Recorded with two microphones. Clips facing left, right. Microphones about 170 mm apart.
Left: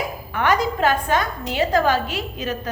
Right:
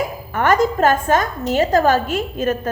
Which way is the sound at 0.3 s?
45° right (ahead or behind).